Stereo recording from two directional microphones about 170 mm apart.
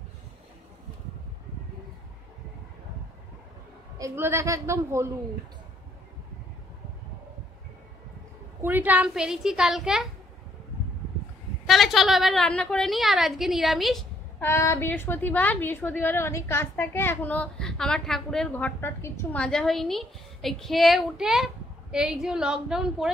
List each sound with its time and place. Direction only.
4.0 s a man's voice: 15° right (ahead or behind)
8.6 s a woman's voice: 10° right (ahead or behind)
11.6 s a woman's voice: centre (ahead or behind)
14.4 s a woman's voice: 15° left (ahead or behind); by 23.1 s 5° right (ahead or behind)